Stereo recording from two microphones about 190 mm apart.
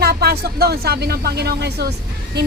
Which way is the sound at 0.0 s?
55° right (ahead or behind).